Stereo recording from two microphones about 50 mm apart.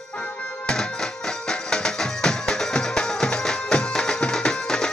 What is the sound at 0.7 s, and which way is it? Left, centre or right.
Music, centre.